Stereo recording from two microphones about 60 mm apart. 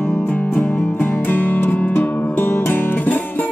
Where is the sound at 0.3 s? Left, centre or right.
Left.